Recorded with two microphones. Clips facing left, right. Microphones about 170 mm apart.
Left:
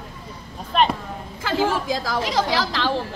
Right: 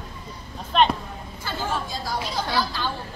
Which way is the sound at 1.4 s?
90° left.